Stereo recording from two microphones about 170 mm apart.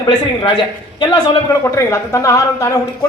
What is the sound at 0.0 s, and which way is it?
A man's voice, 25° left (ahead or behind).